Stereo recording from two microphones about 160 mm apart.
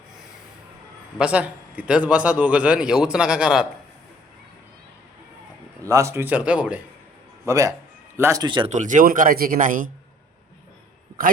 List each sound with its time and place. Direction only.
1.2 s a man's voice: 10° right (ahead or behind)
5.8 s a man's voice: 20° right (ahead or behind)
7.4 s speech: 20° right (ahead or behind)
8.7 s speech: 50° right (ahead or behind)